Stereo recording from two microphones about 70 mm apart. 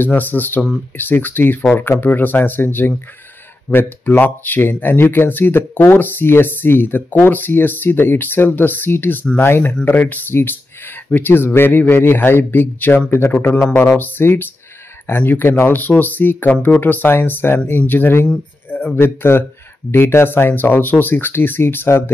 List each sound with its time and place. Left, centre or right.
0.0 s speech: left
13.4 s speech: left
13.9 s speech: left
18.7 s a sound: left
18.9 s speech: left